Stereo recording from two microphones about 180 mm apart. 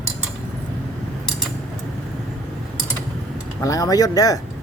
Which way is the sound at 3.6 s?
20° left (ahead or behind).